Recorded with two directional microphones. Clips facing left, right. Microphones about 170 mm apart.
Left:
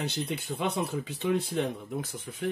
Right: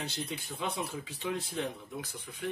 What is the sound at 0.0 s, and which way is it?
Speech, 65° left (ahead or behind).